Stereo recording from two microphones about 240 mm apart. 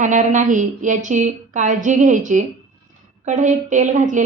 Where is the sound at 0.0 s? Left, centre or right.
Right.